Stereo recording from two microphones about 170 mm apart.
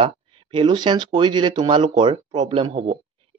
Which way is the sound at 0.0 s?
30° right (ahead or behind).